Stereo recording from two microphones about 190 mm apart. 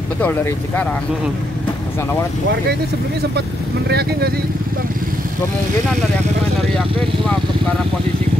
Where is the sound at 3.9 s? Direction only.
55° right (ahead or behind).